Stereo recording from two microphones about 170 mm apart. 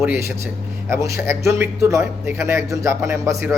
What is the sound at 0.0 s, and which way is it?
Speech, 15° right (ahead or behind).